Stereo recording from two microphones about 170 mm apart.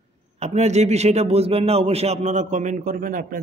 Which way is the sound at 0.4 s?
40° right (ahead or behind).